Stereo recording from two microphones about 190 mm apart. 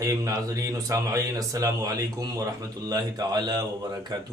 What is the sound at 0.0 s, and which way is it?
A man's voice, 15° right (ahead or behind).